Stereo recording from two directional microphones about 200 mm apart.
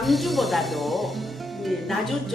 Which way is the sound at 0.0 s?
Centre (ahead or behind).